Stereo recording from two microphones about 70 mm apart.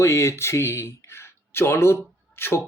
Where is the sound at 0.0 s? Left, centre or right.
Left.